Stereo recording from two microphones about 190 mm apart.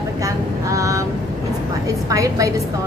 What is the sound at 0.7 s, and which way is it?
Speech, 15° right (ahead or behind).